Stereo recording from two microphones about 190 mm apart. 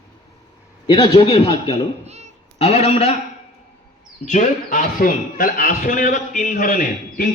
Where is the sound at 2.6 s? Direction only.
35° left (ahead or behind).